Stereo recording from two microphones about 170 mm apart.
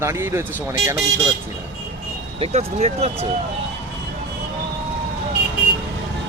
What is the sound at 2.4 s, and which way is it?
Speech, 40° right (ahead or behind).